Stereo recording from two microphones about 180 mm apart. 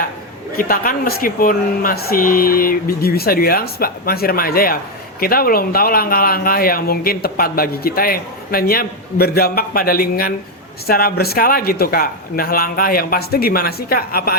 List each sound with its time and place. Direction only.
0.5 s speech: 50° left (ahead or behind)